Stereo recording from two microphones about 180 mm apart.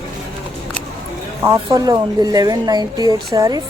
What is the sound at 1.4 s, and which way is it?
Speech, 20° right (ahead or behind).